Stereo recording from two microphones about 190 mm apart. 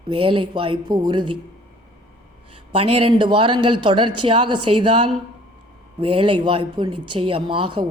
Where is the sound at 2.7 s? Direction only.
30° right (ahead or behind).